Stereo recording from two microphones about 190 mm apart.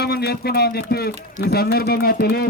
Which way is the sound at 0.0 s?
60° left (ahead or behind).